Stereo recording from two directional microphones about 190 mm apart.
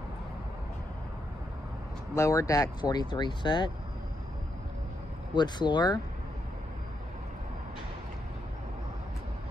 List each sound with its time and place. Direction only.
2.1 s speech: 15° left (ahead or behind)
5.3 s speech: 25° left (ahead or behind)